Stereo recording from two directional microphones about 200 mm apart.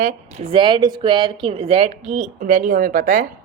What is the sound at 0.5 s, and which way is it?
Speech, 25° right (ahead or behind).